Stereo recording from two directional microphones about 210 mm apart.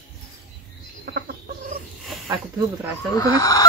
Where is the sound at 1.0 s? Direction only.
45° right (ahead or behind).